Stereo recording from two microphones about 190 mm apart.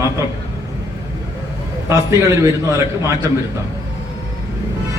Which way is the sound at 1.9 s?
15° right (ahead or behind).